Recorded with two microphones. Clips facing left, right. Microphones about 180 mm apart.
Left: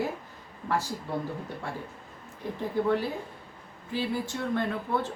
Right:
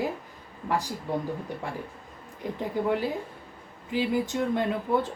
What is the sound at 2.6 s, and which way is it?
Speech, 15° right (ahead or behind).